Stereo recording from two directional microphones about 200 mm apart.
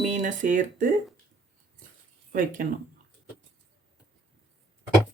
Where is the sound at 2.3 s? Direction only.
40° right (ahead or behind).